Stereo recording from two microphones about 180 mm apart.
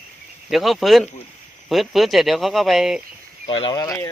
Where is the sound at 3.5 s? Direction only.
30° left (ahead or behind).